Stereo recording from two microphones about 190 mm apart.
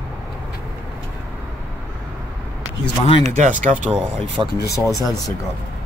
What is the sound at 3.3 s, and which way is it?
Speech, 40° right (ahead or behind).